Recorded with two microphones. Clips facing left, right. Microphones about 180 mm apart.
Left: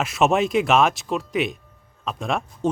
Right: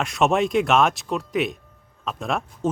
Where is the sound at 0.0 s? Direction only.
Centre (ahead or behind).